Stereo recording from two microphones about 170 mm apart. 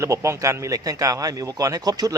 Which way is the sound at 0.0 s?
15° right (ahead or behind).